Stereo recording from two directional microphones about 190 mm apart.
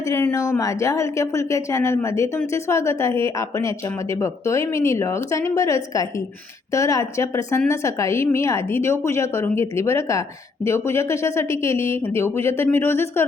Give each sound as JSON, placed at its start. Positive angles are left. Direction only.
{"t": 0.0, "sound": "speech", "side_deg": 15}